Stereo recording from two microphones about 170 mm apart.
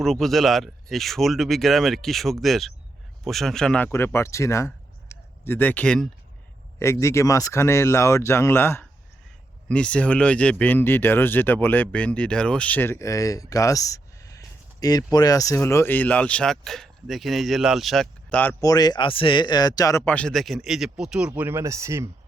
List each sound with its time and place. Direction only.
0.0 s speech: centre (ahead or behind)
6.7 s speech: 15° left (ahead or behind)
18.6 s speech: 20° left (ahead or behind); by 22.1 s 15° right (ahead or behind)